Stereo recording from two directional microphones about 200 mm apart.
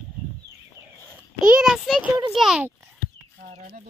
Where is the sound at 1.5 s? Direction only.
5° right (ahead or behind).